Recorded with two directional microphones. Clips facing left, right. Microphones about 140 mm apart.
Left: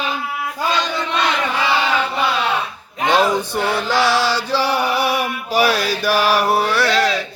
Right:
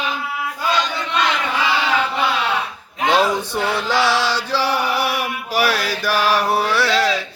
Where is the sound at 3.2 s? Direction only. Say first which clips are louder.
Left 1 dB; centre (ahead or behind).